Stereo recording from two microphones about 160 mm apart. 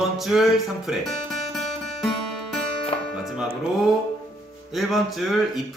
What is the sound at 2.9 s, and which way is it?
Music, 35° left (ahead or behind).